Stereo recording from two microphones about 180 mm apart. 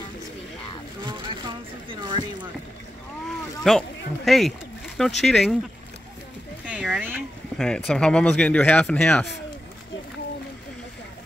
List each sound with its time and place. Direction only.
1.0 s vehicle: 25° right (ahead or behind)
3.6 s speech: centre (ahead or behind)
6.6 s speech: 5° right (ahead or behind)